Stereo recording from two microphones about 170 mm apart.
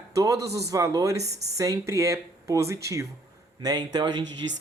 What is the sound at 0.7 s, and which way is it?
Speech, 20° right (ahead or behind).